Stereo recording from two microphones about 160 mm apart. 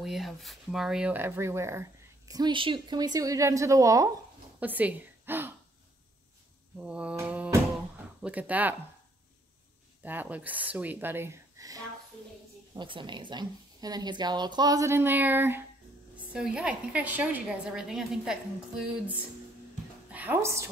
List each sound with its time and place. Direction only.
0.0 s speech: centre (ahead or behind); by 4.1 s 20° right (ahead or behind)
4.6 s speech: 10° right (ahead or behind)
6.8 s a sound: 5° right (ahead or behind)
8.2 s speech: 10° right (ahead or behind)
10.0 s a woman's voice: 10° right (ahead or behind)
20.1 s a woman's voice: 10° right (ahead or behind)